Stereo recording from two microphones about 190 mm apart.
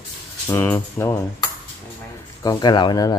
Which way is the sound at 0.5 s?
10° left (ahead or behind).